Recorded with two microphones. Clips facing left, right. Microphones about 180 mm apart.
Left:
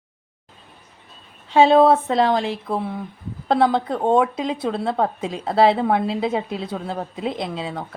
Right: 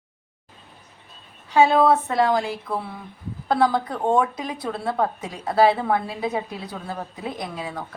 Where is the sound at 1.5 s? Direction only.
25° left (ahead or behind).